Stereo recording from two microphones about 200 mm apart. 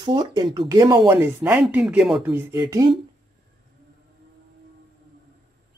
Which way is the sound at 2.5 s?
20° right (ahead or behind).